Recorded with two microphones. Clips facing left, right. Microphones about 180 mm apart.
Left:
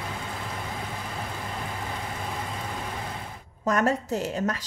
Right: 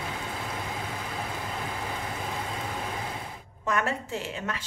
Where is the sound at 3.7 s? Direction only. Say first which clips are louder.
Left 5 dB; 40° left (ahead or behind).